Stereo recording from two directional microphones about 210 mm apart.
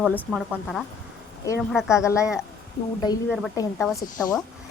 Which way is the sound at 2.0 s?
15° left (ahead or behind).